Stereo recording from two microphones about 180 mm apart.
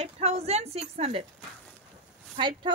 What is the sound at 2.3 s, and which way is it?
Speech, 25° right (ahead or behind).